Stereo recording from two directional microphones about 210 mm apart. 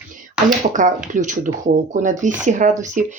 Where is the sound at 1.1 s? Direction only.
35° right (ahead or behind).